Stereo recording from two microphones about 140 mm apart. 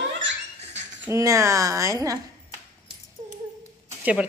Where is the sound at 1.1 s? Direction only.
20° right (ahead or behind).